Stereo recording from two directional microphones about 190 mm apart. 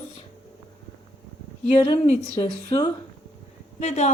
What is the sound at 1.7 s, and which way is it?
A woman's voice, 30° left (ahead or behind).